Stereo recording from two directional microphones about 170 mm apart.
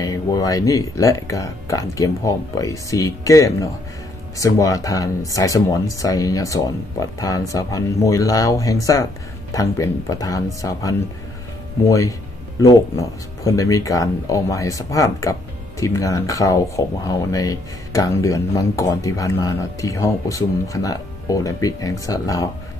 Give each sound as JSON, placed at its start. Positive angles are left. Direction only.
{"t": 0.0, "sound": "speech", "side_deg": 20}
{"t": 13.4, "sound": "speech", "side_deg": 20}